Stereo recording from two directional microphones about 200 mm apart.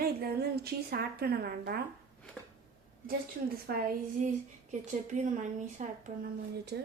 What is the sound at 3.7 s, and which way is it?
Speech, 45° right (ahead or behind).